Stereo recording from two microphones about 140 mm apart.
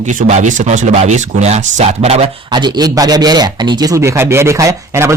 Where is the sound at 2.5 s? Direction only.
30° right (ahead or behind).